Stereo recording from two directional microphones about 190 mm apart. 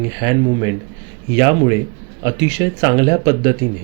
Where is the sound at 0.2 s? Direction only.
20° right (ahead or behind).